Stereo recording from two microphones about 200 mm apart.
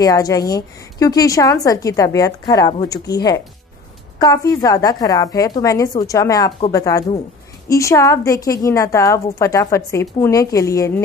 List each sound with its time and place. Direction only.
0.0 s a woman's voice: 15° left (ahead or behind)